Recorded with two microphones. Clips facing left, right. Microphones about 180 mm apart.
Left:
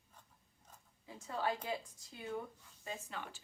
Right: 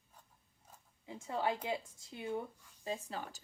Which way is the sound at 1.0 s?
20° right (ahead or behind).